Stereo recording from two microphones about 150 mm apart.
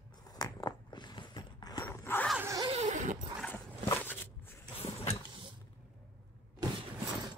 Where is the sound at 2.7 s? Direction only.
55° right (ahead or behind).